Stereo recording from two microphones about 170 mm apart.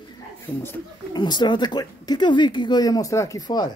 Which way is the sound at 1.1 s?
25° left (ahead or behind).